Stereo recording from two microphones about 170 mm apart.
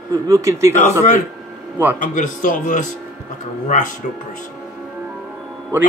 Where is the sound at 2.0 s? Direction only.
50° left (ahead or behind).